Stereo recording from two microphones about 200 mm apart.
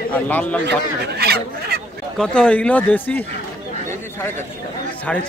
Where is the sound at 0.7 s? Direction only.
55° right (ahead or behind).